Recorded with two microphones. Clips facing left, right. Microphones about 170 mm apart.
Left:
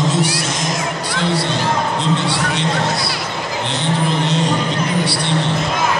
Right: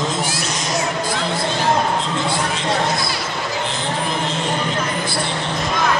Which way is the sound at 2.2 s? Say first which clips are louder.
Left 2 dB; 75° left (ahead or behind).